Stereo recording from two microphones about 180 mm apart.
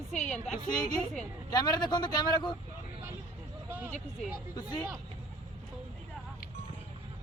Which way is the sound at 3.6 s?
10° right (ahead or behind).